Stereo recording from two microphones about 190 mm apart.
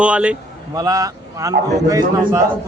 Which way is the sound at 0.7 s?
20° right (ahead or behind).